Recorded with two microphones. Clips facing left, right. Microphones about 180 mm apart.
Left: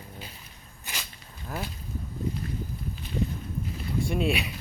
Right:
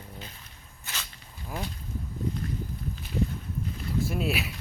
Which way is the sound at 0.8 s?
15° left (ahead or behind).